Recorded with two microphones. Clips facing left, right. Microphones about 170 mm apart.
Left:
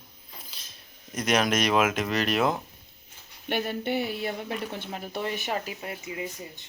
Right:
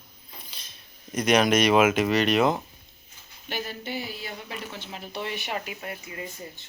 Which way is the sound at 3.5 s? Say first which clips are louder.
Left 5 dB; 60° left (ahead or behind).